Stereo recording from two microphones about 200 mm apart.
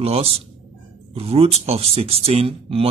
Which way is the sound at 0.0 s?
30° right (ahead or behind).